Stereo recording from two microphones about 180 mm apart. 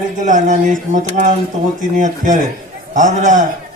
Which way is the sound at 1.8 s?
45° right (ahead or behind).